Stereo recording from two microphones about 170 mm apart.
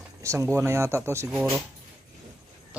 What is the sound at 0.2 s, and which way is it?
Speech, 15° right (ahead or behind).